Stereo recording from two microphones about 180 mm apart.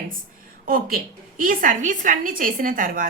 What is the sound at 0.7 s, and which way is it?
A woman's voice, 50° right (ahead or behind).